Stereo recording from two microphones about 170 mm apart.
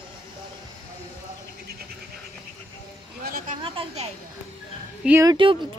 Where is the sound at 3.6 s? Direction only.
30° right (ahead or behind).